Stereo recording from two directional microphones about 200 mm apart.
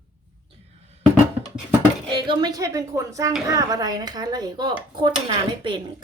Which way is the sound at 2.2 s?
20° right (ahead or behind).